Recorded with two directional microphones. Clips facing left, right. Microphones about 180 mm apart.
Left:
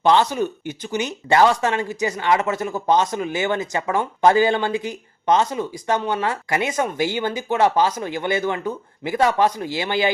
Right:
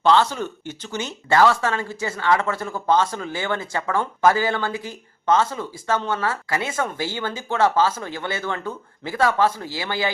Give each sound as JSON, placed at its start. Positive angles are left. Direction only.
{"t": 0.0, "sound": "speech", "side_deg": 15}